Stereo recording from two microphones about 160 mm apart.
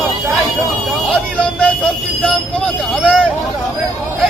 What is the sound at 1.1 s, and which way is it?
Speech, 10° left (ahead or behind).